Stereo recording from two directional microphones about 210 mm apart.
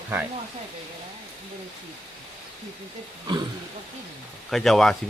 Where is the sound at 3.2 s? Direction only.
20° right (ahead or behind).